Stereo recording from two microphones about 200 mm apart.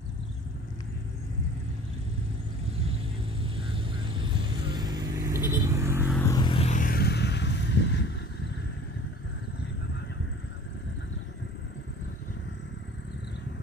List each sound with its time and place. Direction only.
3.5 s vehicle: 25° right (ahead or behind)
6.1 s vehicle: 15° left (ahead or behind); by 8.1 s 65° left (ahead or behind)